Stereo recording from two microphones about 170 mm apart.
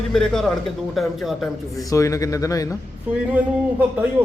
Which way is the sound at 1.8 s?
20° left (ahead or behind).